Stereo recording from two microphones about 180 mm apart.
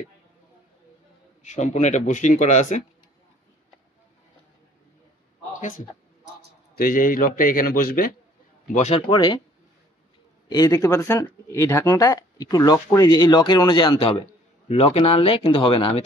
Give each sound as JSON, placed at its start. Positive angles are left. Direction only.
{"t": 1.4, "sound": "speech", "side_deg": 40}
{"t": 5.5, "sound": "a sound", "side_deg": 45}
{"t": 6.7, "sound": "a man's voice", "side_deg": 55}
{"t": 8.7, "sound": "speech", "side_deg": 35}
{"t": 10.5, "sound": "speech", "side_deg": 20}